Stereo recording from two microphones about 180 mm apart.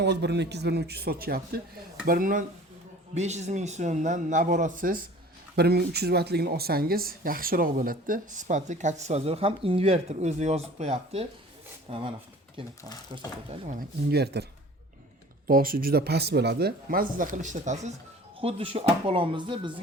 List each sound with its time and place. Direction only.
0.0 s speech: 70° right (ahead or behind); by 2.4 s 50° right (ahead or behind)
3.2 s speech: 40° right (ahead or behind)
5.5 s speech: 65° right (ahead or behind); by 12.7 s 25° right (ahead or behind)
13.5 s speech: 40° right (ahead or behind)
14.1 s speech: 65° right (ahead or behind)
15.4 s speech: 50° right (ahead or behind)
18.3 s speech: 30° right (ahead or behind)